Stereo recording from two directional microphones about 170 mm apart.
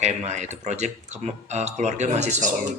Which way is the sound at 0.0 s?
40° right (ahead or behind).